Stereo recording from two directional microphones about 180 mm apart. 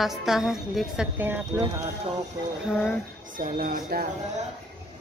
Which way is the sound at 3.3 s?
50° right (ahead or behind).